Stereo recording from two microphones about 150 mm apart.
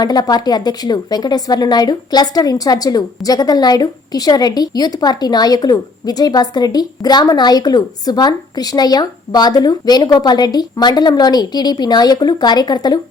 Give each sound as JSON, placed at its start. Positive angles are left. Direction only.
{"t": 0.0, "sound": "a woman's voice", "side_deg": 25}